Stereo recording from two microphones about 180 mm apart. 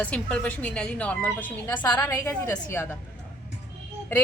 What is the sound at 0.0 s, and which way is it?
A woman's voice, 10° left (ahead or behind).